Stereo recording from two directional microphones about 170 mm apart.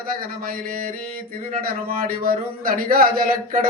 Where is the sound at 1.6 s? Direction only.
60° right (ahead or behind).